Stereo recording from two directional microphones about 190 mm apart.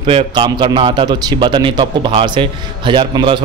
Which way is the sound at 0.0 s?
25° right (ahead or behind).